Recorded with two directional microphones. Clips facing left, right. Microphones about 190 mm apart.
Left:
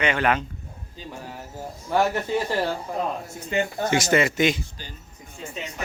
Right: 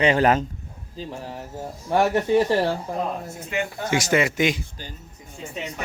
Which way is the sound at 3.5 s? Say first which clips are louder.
Left 2 dB; 30° left (ahead or behind).